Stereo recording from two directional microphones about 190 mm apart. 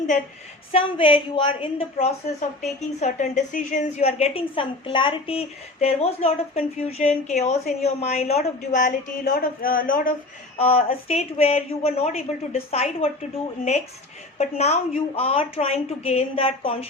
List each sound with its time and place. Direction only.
0.7 s a woman's voice: 30° left (ahead or behind); by 10.2 s 45° left (ahead or behind)
10.6 s a woman's voice: 30° left (ahead or behind)
14.3 s a woman's voice: 35° left (ahead or behind)